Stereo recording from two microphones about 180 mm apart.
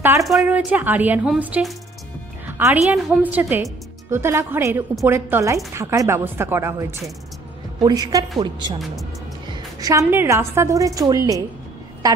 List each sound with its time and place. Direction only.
0.0 s a woman's voice: 15° right (ahead or behind)
9.5 s music: 20° right (ahead or behind)
10.0 s a woman's voice: 15° right (ahead or behind)